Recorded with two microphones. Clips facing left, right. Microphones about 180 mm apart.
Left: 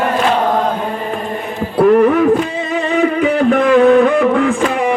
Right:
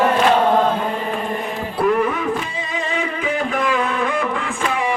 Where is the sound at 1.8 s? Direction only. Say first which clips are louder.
Left 9 dB; 55° left (ahead or behind).